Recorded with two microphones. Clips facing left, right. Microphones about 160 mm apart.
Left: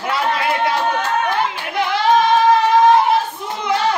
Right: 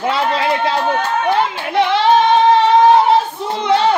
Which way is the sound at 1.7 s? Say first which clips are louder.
Right 3 dB; 25° right (ahead or behind).